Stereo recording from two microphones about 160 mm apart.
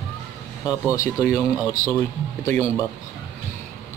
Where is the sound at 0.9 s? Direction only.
20° left (ahead or behind).